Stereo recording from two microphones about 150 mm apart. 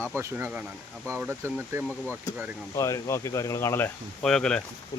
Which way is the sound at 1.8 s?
5° left (ahead or behind).